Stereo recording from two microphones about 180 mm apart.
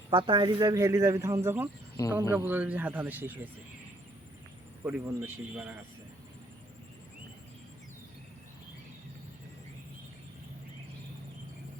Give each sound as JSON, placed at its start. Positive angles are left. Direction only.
{"t": 0.1, "sound": "speech", "side_deg": -30}
{"t": 2.0, "sound": "a man's voice", "side_deg": 20}
{"t": 2.3, "sound": "speech", "side_deg": -10}
{"t": 4.9, "sound": "speech", "side_deg": -10}